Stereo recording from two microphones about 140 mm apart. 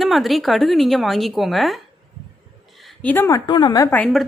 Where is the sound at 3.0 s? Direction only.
15° left (ahead or behind).